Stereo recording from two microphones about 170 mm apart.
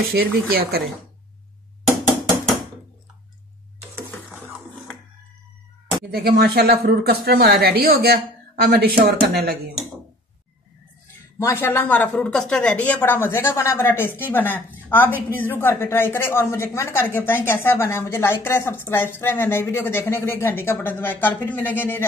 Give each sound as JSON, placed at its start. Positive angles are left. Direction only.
{"t": 0.1, "sound": "speech", "side_deg": -65}
{"t": 6.1, "sound": "speech", "side_deg": -65}
{"t": 11.3, "sound": "a woman's voice", "side_deg": 15}